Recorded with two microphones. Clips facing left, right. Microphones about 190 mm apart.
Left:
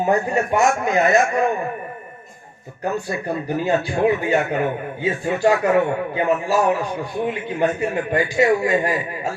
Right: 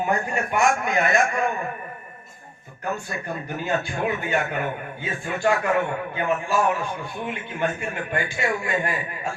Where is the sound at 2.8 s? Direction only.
35° left (ahead or behind).